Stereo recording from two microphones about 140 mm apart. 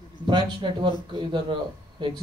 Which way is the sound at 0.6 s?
35° right (ahead or behind).